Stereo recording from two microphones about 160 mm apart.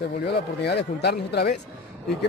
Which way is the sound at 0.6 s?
90° left.